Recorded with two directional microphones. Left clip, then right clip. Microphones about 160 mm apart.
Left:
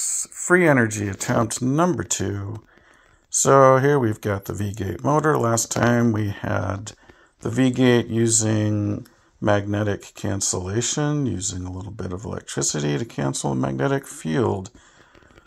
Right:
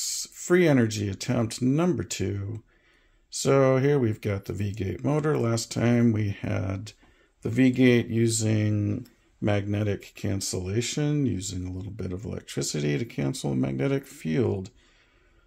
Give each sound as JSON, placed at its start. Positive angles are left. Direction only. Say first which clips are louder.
{"t": 0.0, "sound": "a sound", "louder": "left 4 dB", "side_deg": -15}
{"t": 0.8, "sound": "speech", "louder": "left 4 dB", "side_deg": -35}
{"t": 1.2, "sound": "speech", "louder": "left 6 dB", "side_deg": -10}